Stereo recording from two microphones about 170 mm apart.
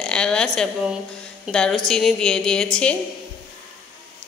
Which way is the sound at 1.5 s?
5° left (ahead or behind).